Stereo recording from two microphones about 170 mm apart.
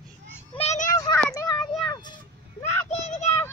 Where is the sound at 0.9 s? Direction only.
20° left (ahead or behind).